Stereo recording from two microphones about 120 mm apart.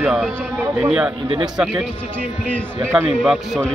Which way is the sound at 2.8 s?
20° right (ahead or behind).